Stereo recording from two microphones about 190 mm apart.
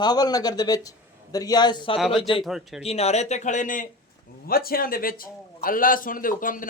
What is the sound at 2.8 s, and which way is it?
Speech, 35° left (ahead or behind).